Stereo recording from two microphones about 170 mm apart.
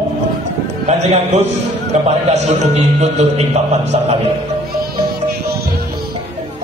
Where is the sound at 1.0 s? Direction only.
40° right (ahead or behind).